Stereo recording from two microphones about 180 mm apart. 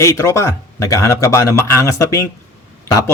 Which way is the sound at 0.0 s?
15° left (ahead or behind).